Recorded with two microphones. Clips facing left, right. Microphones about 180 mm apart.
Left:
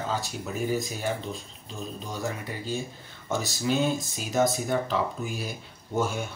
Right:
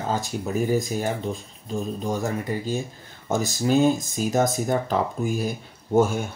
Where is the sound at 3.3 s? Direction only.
45° right (ahead or behind).